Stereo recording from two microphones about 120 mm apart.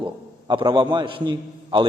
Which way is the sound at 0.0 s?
40° right (ahead or behind).